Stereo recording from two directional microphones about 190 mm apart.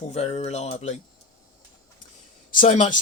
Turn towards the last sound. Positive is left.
turn(degrees=40)  # may be behind; listen again after turning